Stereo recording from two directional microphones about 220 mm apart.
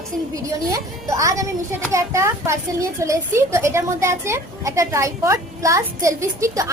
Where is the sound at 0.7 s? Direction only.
15° right (ahead or behind).